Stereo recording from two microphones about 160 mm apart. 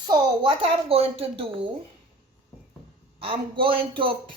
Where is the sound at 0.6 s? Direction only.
35° right (ahead or behind).